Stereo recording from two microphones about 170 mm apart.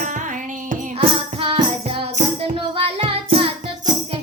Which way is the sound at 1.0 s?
30° right (ahead or behind).